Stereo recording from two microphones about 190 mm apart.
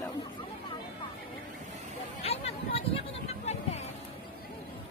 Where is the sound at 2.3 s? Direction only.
30° left (ahead or behind).